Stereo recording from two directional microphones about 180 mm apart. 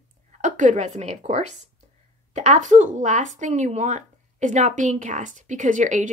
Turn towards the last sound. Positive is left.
turn(degrees=-45)  # may be behind; listen again after turning